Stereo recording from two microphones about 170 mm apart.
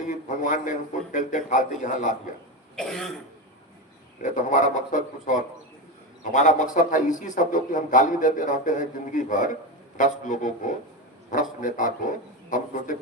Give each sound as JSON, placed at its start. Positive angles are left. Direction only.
{"t": 0.0, "sound": "a man's voice", "side_deg": 50}
{"t": 2.7, "sound": "throat clearing", "side_deg": 0}
{"t": 4.2, "sound": "a man's voice", "side_deg": 50}